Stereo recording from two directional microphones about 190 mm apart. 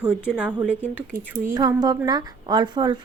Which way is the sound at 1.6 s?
20° right (ahead or behind).